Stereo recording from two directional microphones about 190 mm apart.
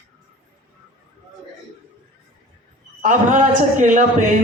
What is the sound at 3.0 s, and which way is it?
Speech, 45° right (ahead or behind).